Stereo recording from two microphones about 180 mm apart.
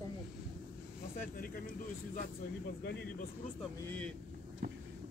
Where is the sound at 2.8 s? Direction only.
65° left (ahead or behind).